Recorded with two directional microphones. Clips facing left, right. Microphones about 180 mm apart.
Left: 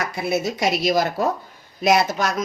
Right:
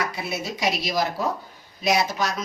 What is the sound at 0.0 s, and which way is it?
Speech, 45° left (ahead or behind).